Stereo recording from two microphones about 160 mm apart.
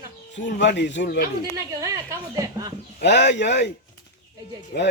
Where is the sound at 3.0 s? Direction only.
90° left.